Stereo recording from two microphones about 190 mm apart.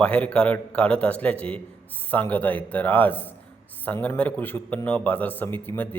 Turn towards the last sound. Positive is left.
turn(degrees=10)  # may be behind; listen again after turning